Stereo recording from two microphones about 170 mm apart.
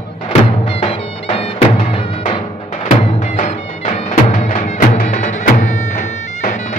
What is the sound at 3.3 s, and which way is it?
Music, 45° left (ahead or behind).